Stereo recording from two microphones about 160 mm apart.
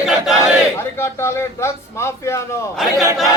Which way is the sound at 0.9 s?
15° left (ahead or behind).